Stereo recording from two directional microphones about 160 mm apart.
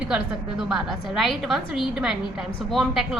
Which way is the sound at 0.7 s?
Centre (ahead or behind).